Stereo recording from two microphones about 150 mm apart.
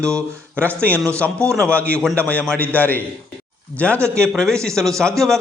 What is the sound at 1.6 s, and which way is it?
A man's voice, 10° left (ahead or behind).